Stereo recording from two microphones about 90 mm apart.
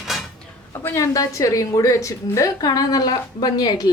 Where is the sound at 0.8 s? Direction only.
25° left (ahead or behind).